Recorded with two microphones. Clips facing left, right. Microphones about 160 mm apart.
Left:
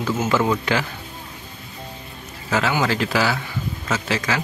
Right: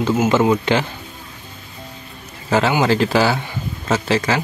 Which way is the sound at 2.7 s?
30° right (ahead or behind).